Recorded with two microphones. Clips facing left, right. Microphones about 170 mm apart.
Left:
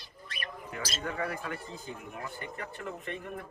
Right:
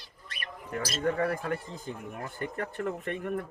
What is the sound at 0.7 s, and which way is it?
Speech, 45° right (ahead or behind).